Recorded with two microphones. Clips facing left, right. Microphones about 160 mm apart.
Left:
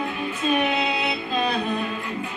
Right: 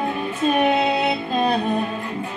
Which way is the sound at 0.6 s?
45° right (ahead or behind).